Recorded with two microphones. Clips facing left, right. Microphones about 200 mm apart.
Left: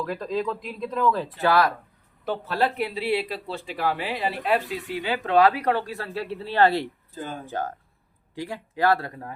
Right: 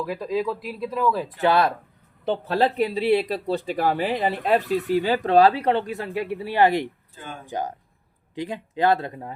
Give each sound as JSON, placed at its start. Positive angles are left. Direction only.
{"t": 0.0, "sound": "speech", "side_deg": -10}
{"t": 2.8, "sound": "speech", "side_deg": -35}
{"t": 7.1, "sound": "speech", "side_deg": 40}
{"t": 7.4, "sound": "speech", "side_deg": -15}